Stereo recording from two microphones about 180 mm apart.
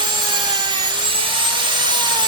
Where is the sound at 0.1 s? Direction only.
25° right (ahead or behind).